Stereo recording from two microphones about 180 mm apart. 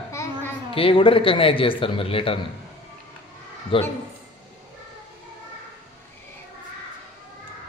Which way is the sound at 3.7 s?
30° left (ahead or behind).